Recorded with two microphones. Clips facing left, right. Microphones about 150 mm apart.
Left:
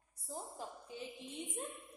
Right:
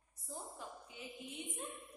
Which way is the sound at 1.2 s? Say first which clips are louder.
Even; 40° left (ahead or behind).